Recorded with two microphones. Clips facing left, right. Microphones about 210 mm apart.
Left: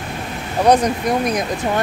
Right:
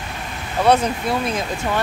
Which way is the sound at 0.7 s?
15° left (ahead or behind).